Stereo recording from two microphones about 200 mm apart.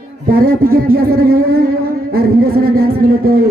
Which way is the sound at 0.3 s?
45° right (ahead or behind).